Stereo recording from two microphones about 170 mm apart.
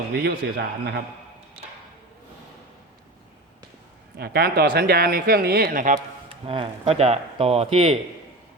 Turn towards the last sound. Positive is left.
turn(degrees=-35)  # may be behind; listen again after turning